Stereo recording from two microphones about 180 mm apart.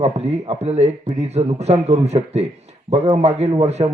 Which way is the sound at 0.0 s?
35° right (ahead or behind).